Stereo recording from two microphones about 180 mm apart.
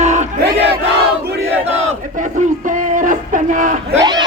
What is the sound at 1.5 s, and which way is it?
Battle cry, 35° right (ahead or behind).